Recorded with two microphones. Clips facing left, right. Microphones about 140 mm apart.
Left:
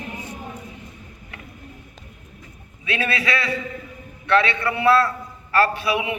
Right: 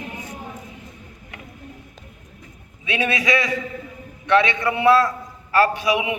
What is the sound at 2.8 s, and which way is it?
A man's voice, 15° right (ahead or behind).